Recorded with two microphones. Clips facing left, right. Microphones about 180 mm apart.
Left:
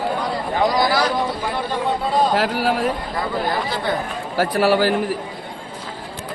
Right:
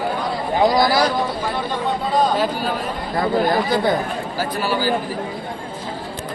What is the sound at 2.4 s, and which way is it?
Speech, 85° left.